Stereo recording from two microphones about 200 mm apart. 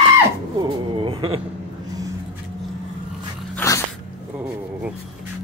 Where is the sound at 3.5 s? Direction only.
15° left (ahead or behind).